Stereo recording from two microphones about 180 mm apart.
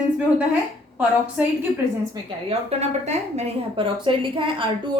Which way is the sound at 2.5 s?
35° right (ahead or behind).